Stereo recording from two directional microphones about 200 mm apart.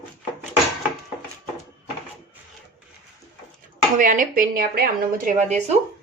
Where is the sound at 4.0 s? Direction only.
40° right (ahead or behind).